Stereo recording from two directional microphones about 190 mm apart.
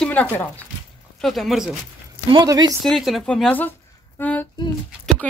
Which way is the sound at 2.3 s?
20° right (ahead or behind).